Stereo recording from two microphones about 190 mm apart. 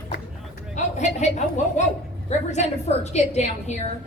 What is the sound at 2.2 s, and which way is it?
A woman's voice, 35° left (ahead or behind).